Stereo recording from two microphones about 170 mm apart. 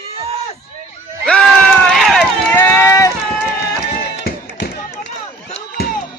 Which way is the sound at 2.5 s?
15° left (ahead or behind).